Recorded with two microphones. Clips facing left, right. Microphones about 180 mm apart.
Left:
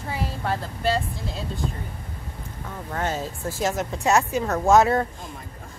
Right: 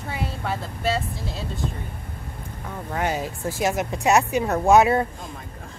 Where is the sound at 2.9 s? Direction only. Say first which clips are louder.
Right 2 dB; 10° right (ahead or behind).